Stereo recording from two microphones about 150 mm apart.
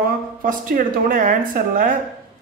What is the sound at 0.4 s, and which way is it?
A man's voice, 65° right (ahead or behind).